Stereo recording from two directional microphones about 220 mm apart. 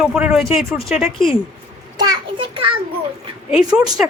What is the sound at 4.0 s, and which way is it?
Speech, 5° right (ahead or behind).